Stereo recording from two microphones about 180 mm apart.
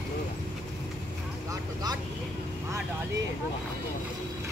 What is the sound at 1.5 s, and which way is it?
Vehicle, 20° right (ahead or behind).